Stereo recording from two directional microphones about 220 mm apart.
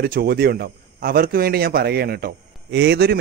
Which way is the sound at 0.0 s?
45° right (ahead or behind).